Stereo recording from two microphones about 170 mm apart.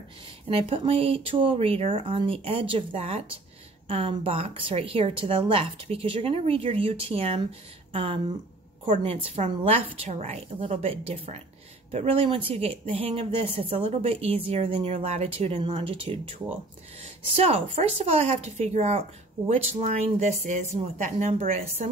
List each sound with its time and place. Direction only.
0.5 s speech: 30° right (ahead or behind)